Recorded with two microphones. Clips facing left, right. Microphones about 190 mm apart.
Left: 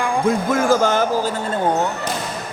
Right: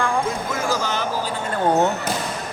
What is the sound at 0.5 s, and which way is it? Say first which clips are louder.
Speech: left 8 dB; 50° left (ahead or behind).